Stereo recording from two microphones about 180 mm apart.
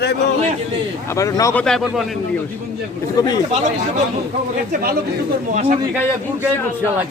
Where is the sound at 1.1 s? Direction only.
20° left (ahead or behind).